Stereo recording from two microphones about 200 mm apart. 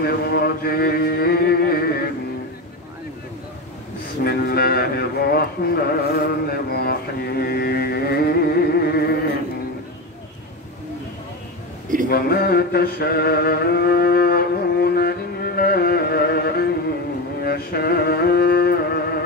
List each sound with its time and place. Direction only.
0.0 s speech: 50° left (ahead or behind)
4.2 s speech: 50° left (ahead or behind)
12.1 s music: 50° left (ahead or behind)